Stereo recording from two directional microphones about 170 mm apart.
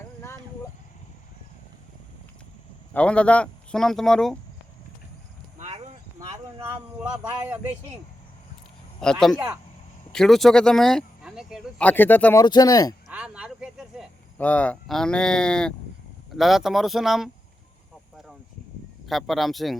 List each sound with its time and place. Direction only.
2.9 s a man's voice: 5° left (ahead or behind)
5.5 s clip-clop: 40° right (ahead or behind)
9.0 s a man's voice: 5° left (ahead or behind)
11.9 s speech: 10° left (ahead or behind)
13.1 s a sound: 5° right (ahead or behind)
14.3 s a man's voice: 10° left (ahead or behind)
19.0 s a man's voice: centre (ahead or behind)